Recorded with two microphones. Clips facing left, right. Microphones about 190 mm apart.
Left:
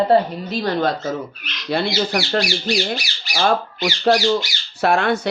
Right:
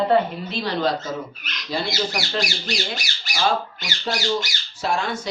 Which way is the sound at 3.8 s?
75° left (ahead or behind).